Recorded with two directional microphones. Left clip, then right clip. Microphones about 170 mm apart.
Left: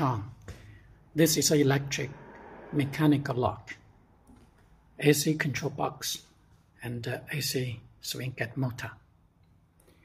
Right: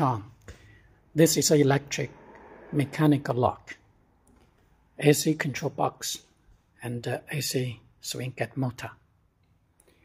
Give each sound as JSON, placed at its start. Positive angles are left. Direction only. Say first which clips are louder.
{"t": 0.7, "sound": "a man's voice", "louder": "even", "side_deg": -10}
{"t": 4.9, "sound": "speech", "louder": "right 2 dB", "side_deg": -10}